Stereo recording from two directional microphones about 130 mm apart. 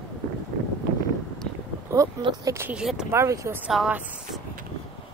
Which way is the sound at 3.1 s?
25° right (ahead or behind).